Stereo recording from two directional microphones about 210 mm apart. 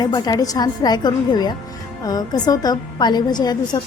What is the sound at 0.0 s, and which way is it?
A woman's voice, 20° left (ahead or behind).